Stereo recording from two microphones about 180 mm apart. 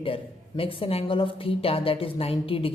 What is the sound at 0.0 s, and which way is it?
Speech, 30° left (ahead or behind).